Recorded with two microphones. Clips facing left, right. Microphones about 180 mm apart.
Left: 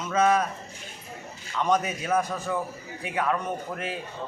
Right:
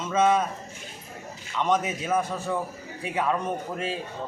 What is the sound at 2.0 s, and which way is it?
Speech, 5° right (ahead or behind).